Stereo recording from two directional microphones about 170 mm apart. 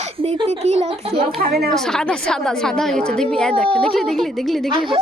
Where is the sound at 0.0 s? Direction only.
35° right (ahead or behind).